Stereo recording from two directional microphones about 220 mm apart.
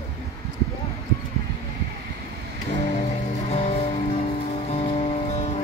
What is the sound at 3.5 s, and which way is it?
Music, 30° left (ahead or behind).